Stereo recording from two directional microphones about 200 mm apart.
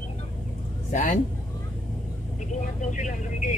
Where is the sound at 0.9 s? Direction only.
40° left (ahead or behind).